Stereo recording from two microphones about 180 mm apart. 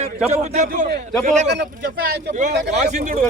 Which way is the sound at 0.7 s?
55° right (ahead or behind).